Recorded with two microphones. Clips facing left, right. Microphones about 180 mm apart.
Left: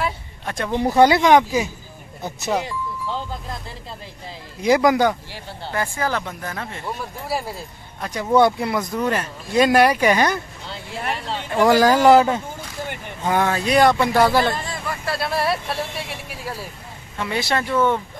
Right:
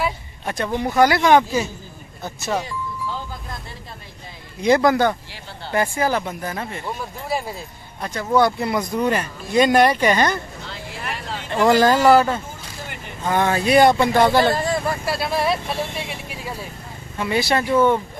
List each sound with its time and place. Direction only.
0.0 s a sound: 5° right (ahead or behind)
0.8 s speech: 25° left (ahead or behind)
4.6 s speech: 5° left (ahead or behind)
5.7 s speech: 15° right (ahead or behind)
7.2 s speech: 5° left (ahead or behind)
8.5 s speech: centre (ahead or behind)
11.5 s speech: 10° left (ahead or behind)
13.5 s speech: 5° right (ahead or behind)
14.4 s speech: 40° right (ahead or behind)
15.0 s speech: centre (ahead or behind)